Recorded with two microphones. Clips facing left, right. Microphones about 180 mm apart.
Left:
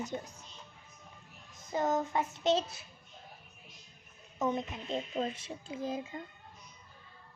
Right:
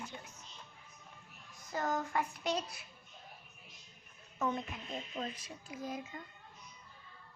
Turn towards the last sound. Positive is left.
turn(degrees=25)  # may be behind; listen again after turning